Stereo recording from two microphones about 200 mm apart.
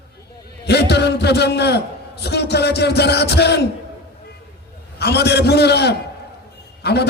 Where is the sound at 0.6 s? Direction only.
55° left (ahead or behind).